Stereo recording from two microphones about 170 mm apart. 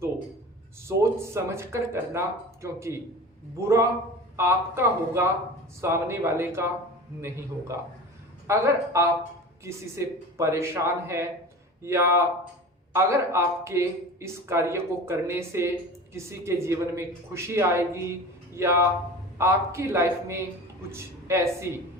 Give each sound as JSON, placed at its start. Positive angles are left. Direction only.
{"t": 0.9, "sound": "speech", "side_deg": -15}
{"t": 8.4, "sound": "speech", "side_deg": -15}